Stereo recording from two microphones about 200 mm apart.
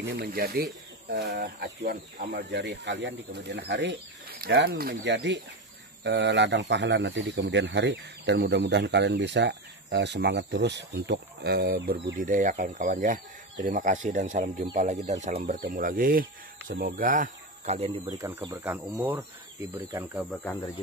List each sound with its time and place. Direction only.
0.0 s speech: 50° right (ahead or behind); by 18.0 s 30° right (ahead or behind)
18.0 s speech: 10° right (ahead or behind)
20.2 s speech: 10° left (ahead or behind)